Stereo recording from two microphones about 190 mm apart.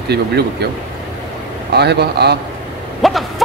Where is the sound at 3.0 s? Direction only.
Centre (ahead or behind).